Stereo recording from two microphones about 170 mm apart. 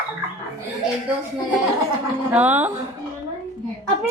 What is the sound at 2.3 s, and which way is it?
Speech, 10° right (ahead or behind).